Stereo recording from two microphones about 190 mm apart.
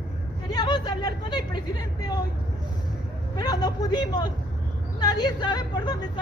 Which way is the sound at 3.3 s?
20° left (ahead or behind).